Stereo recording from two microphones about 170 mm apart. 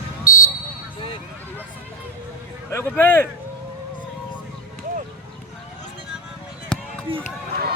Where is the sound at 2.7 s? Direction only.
15° left (ahead or behind).